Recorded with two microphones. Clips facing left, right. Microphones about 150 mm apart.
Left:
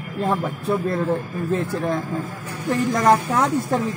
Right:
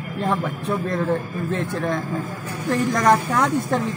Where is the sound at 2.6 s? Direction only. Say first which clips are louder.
Left 1 dB; 5° left (ahead or behind).